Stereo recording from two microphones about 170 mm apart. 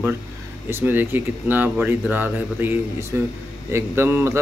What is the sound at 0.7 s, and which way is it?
Speech, 10° right (ahead or behind).